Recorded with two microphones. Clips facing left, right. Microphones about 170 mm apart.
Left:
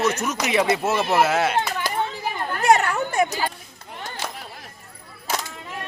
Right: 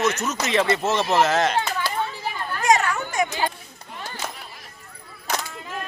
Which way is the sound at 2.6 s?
60° left (ahead or behind).